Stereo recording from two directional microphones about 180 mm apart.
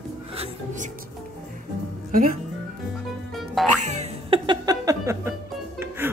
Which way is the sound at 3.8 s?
40° right (ahead or behind).